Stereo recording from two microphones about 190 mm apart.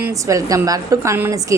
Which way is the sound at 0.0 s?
15° right (ahead or behind).